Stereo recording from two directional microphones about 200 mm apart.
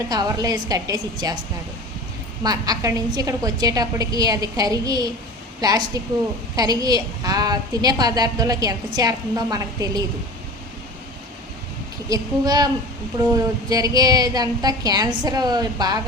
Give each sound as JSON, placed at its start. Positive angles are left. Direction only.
{"t": 0.1, "sound": "a woman's voice", "side_deg": -20}
{"t": 2.4, "sound": "a woman's voice", "side_deg": -20}
{"t": 12.0, "sound": "a woman's voice", "side_deg": -20}